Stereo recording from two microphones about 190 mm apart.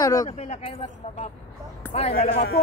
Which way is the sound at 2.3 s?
55° left (ahead or behind).